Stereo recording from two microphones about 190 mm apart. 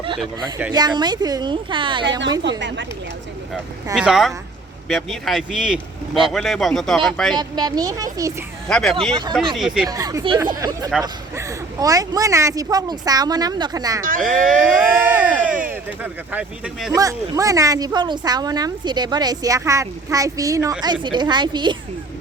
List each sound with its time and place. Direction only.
0.7 s speech: 20° right (ahead or behind)
2.4 s a woman's voice: 70° right (ahead or behind)
3.9 s speech: 5° right (ahead or behind)
7.3 s speech: 20° right (ahead or behind)
8.7 s speech: centre (ahead or behind)
9.9 s speech: 20° right (ahead or behind)
14.2 s speech: centre (ahead or behind)
17.0 s speech: 15° right (ahead or behind)